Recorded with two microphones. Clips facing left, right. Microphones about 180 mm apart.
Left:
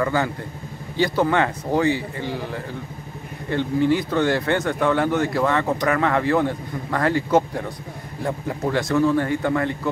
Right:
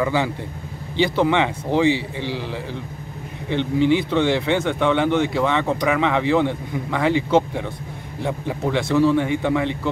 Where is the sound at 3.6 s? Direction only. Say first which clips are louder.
Right 1 dB; 75° right (ahead or behind).